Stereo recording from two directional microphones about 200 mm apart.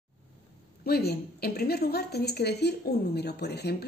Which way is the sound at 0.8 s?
50° left (ahead or behind).